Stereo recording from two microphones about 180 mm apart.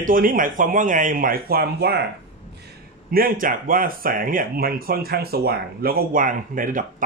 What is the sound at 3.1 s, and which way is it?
A man's voice, 50° right (ahead or behind).